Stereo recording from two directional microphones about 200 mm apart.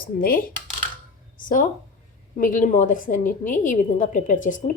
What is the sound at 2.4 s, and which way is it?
A woman's voice, 40° left (ahead or behind).